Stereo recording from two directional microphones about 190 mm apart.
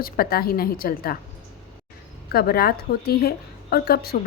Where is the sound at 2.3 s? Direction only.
55° left (ahead or behind).